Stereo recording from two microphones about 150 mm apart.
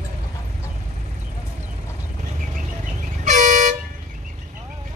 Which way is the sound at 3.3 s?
55° right (ahead or behind).